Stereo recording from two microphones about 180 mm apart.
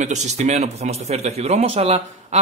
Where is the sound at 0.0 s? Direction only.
40° right (ahead or behind).